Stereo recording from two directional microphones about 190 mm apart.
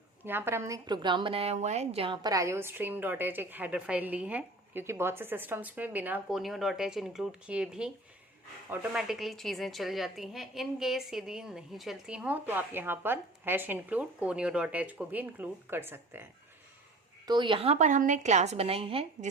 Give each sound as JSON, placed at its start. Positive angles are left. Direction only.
{"t": 0.3, "sound": "a woman's voice", "side_deg": -10}
{"t": 17.2, "sound": "a woman's voice", "side_deg": -25}